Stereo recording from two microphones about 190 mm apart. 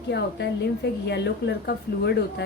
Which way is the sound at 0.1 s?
65° left (ahead or behind).